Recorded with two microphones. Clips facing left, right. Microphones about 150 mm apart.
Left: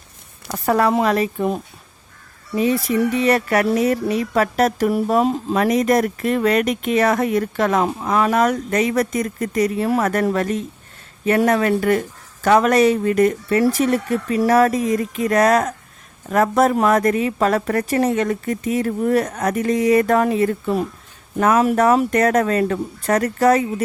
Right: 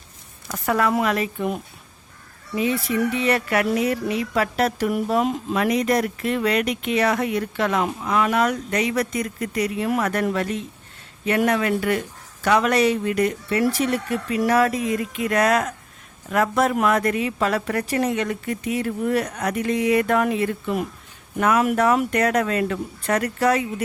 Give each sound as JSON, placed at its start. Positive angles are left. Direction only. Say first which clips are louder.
{"t": 0.5, "sound": "a woman's voice", "louder": "left 4 dB", "side_deg": 35}